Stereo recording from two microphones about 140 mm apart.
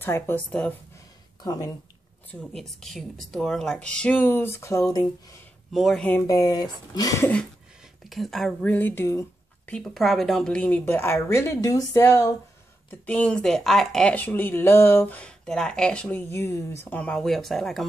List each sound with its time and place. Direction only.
0.0 s speech: 15° left (ahead or behind)
1.4 s speech: 25° left (ahead or behind)
2.5 s speech: centre (ahead or behind); by 5.0 s 20° left (ahead or behind)
5.7 s speech: centre (ahead or behind)
6.1 s speech: 25° left (ahead or behind)
8.0 s speech: centre (ahead or behind); by 9.2 s 20° left (ahead or behind)
9.7 s speech: 5° left (ahead or behind); by 12.4 s 20° left (ahead or behind)
13.0 s speech: 10° left (ahead or behind)
17.0 s speech: 5° left (ahead or behind)